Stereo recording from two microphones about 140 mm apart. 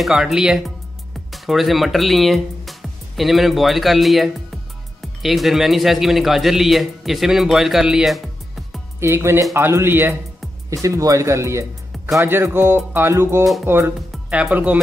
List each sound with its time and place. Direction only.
0.0 s speech: centre (ahead or behind)
9.0 s speech: 20° right (ahead or behind)
13.9 s speech: centre (ahead or behind)